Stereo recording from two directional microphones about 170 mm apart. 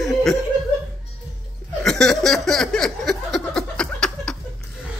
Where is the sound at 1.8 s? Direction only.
5° left (ahead or behind).